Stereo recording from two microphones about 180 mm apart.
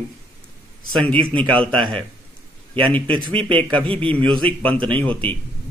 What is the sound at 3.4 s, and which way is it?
Speech, 30° right (ahead or behind).